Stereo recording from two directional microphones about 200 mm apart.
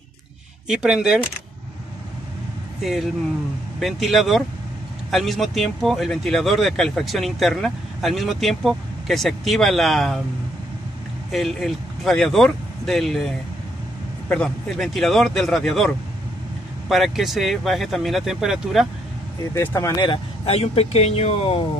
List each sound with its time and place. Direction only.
0.7 s speech: 5° right (ahead or behind)
2.8 s speech: centre (ahead or behind)
11.3 s speech: centre (ahead or behind)
14.3 s speech: 5° left (ahead or behind)
16.9 s speech: centre (ahead or behind)
19.5 s speech: 15° left (ahead or behind); by 21.6 s 30° left (ahead or behind)